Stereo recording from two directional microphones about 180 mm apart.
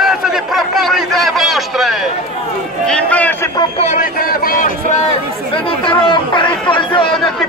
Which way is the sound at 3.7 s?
40° left (ahead or behind).